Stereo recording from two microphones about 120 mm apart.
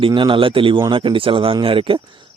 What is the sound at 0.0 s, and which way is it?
Speech, 45° right (ahead or behind).